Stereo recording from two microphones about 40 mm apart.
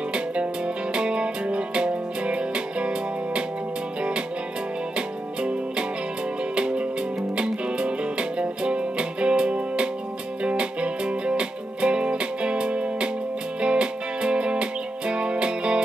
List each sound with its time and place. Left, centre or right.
0.9 s music: right
4.9 s music: right